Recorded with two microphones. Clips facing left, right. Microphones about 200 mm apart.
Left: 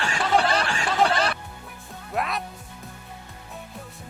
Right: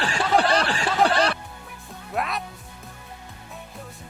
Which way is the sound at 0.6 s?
35° right (ahead or behind).